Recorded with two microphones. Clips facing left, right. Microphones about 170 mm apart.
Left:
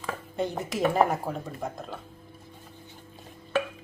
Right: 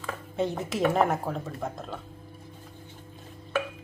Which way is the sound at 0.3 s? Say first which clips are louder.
Right 1 dB; centre (ahead or behind).